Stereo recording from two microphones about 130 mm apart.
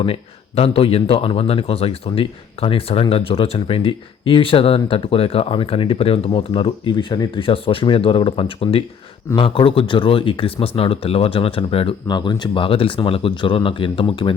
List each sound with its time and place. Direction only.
0.0 s speech: 50° left (ahead or behind)